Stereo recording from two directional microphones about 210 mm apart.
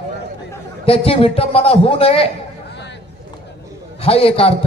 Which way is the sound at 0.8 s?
25° left (ahead or behind).